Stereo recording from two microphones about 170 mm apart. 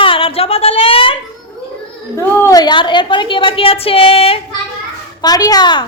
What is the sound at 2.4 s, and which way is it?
A woman's voice, 20° left (ahead or behind).